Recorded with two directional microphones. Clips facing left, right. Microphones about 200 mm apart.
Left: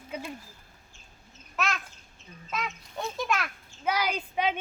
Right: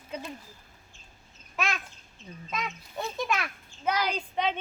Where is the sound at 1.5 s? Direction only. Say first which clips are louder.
Left 1 dB; centre (ahead or behind).